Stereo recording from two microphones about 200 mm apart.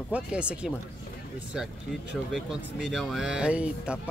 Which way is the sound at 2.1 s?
Centre (ahead or behind).